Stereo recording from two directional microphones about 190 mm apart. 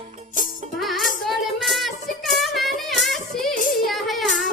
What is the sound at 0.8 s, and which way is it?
Child singing, centre (ahead or behind).